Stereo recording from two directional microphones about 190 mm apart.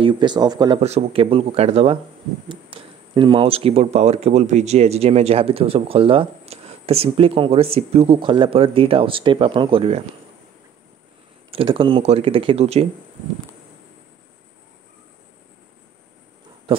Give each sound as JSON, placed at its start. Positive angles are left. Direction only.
{"t": 0.0, "sound": "speech", "side_deg": -25}
{"t": 0.7, "sound": "speech", "side_deg": -35}
{"t": 11.5, "sound": "speech", "side_deg": -30}